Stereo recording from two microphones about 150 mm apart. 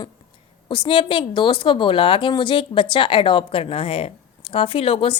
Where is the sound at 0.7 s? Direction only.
35° left (ahead or behind).